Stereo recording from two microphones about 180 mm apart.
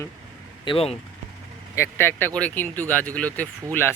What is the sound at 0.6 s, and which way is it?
Speech, 30° left (ahead or behind).